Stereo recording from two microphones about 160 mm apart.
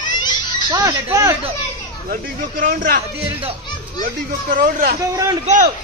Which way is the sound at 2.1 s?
65° right (ahead or behind).